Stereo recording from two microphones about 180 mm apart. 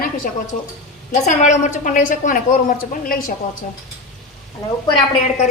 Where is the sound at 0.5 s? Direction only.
40° left (ahead or behind).